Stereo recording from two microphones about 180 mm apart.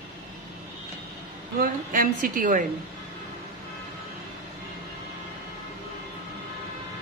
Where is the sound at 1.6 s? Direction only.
50° right (ahead or behind).